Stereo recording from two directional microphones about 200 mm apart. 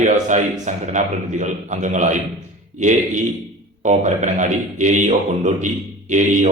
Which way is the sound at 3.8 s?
35° right (ahead or behind).